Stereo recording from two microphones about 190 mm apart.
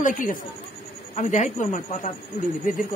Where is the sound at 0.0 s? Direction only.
45° left (ahead or behind).